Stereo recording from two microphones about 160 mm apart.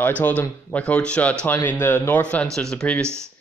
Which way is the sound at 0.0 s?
10° left (ahead or behind).